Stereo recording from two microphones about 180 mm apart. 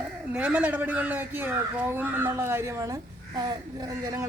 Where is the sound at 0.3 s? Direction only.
5° right (ahead or behind).